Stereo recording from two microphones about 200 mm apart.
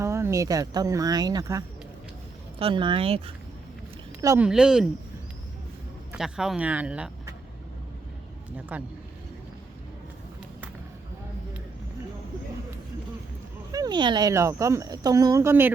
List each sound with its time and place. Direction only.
0.0 s speech: 15° right (ahead or behind)
4.2 s speech: 15° right (ahead or behind)
4.4 s speech: 5° right (ahead or behind)
6.1 s speech: 5° right (ahead or behind)
8.7 s speech: 5° right (ahead or behind)
13.7 s speech: 20° right (ahead or behind)